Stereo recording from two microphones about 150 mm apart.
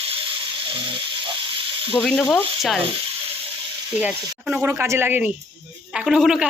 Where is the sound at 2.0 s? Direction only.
5° left (ahead or behind).